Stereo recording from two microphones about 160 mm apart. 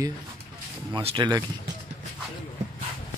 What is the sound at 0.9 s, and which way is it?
Speech, 30° right (ahead or behind).